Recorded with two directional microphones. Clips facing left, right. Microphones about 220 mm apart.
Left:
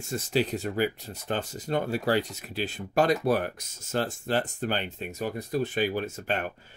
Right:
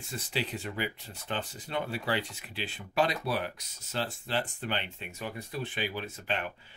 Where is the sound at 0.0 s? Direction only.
45° left (ahead or behind).